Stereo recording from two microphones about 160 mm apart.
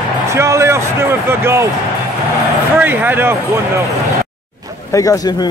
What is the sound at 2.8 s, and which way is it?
Speech, 10° right (ahead or behind).